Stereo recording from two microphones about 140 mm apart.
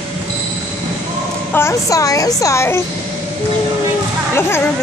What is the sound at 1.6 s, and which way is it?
A woman's voice, 20° left (ahead or behind).